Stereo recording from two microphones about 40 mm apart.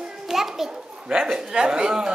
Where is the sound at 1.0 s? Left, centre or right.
Centre.